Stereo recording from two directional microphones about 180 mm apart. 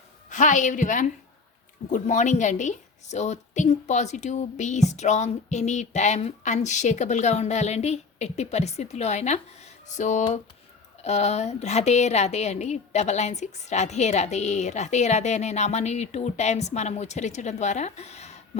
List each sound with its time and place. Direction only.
0.3 s a woman's voice: 45° left (ahead or behind)